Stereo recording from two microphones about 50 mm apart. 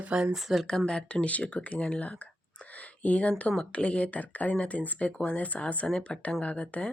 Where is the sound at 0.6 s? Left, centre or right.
Centre.